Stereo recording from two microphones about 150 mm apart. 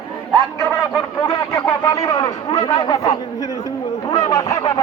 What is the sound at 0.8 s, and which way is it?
Speech, 15° left (ahead or behind).